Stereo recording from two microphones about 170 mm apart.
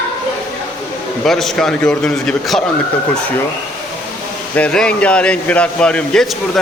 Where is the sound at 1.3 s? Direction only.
Centre (ahead or behind).